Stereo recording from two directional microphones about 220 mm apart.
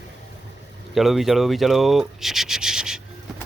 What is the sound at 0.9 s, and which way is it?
Speech, centre (ahead or behind).